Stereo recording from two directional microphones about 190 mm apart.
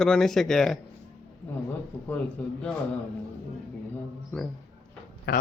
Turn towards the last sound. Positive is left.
turn(degrees=60)  # may be behind; listen again after turning